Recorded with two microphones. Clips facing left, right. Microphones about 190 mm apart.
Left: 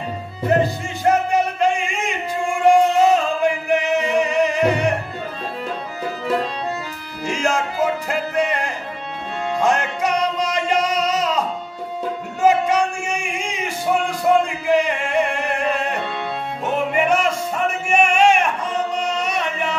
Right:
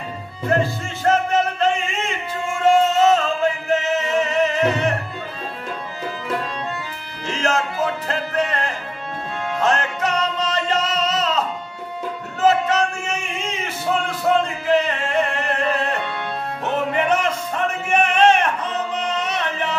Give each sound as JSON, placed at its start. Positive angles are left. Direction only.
{"t": 0.5, "sound": "music", "side_deg": 15}
{"t": 7.2, "sound": "music", "side_deg": 10}